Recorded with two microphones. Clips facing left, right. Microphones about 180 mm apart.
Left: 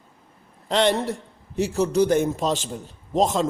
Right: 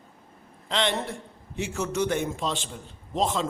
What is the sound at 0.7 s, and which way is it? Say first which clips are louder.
A man's voice: left 7 dB; 45° left (ahead or behind).